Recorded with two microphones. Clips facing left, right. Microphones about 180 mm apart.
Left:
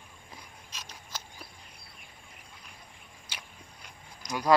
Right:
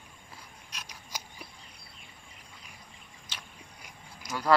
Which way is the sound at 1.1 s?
10° right (ahead or behind).